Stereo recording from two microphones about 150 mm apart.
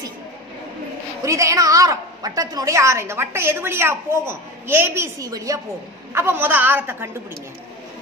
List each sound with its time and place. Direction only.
1.2 s a woman's voice: 20° right (ahead or behind)